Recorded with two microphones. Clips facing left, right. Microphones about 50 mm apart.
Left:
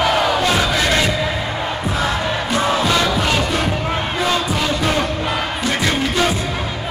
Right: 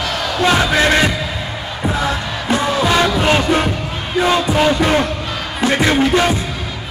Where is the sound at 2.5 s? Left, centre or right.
Centre.